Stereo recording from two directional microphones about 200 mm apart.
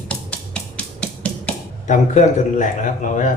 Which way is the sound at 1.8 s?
35° left (ahead or behind).